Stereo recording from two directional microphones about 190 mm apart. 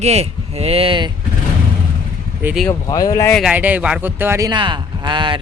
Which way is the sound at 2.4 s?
Centre (ahead or behind).